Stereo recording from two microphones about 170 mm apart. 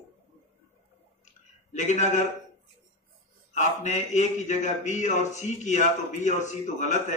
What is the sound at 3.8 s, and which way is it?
A man's voice, 45° left (ahead or behind).